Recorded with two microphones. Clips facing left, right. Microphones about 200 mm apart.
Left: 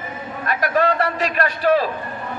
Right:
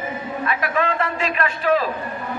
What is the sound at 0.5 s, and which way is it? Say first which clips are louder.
Speech: left 5 dB; 40° left (ahead or behind).